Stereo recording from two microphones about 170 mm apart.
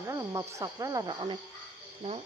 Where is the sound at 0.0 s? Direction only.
20° right (ahead or behind).